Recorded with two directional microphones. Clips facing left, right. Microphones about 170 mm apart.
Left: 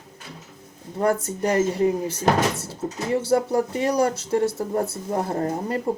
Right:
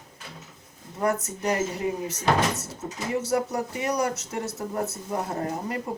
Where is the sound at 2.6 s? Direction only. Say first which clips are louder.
Left 5 dB; 30° left (ahead or behind).